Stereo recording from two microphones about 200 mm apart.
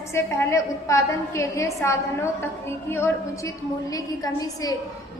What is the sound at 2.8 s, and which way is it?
A woman's voice, 10° left (ahead or behind).